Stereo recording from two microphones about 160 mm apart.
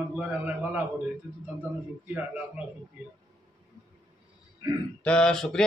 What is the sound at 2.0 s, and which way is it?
Speech, 10° right (ahead or behind).